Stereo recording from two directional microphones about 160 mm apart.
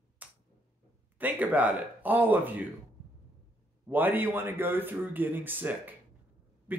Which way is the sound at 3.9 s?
10° right (ahead or behind).